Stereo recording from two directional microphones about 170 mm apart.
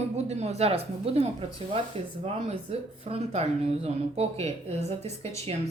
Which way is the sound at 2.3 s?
35° right (ahead or behind).